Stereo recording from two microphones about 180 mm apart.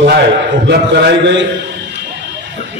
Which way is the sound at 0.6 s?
65° right (ahead or behind).